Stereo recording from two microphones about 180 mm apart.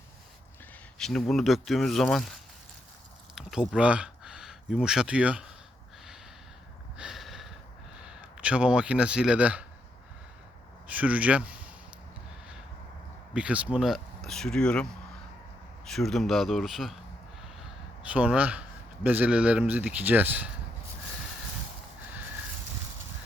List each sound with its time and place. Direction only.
0.9 s speech: 5° left (ahead or behind)
3.3 s speech: 5° right (ahead or behind)
6.9 s a sound: 5° right (ahead or behind)
8.0 s a man's voice: 5° right (ahead or behind)
10.8 s speech: 10° right (ahead or behind)
13.3 s speech: 5° right (ahead or behind)
15.9 s speech: centre (ahead or behind)
18.1 s speech: 10° right (ahead or behind)